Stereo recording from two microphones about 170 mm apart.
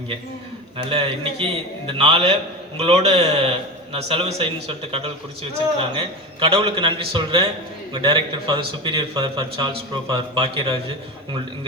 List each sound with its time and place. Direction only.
0.8 s a man's voice: 35° right (ahead or behind)